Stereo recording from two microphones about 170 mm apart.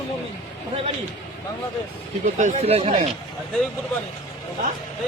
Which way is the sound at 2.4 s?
40° right (ahead or behind).